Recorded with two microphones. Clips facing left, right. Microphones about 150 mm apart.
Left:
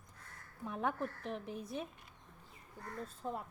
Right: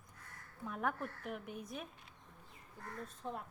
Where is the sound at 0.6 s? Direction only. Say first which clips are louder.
Left 2 dB; 20° left (ahead or behind).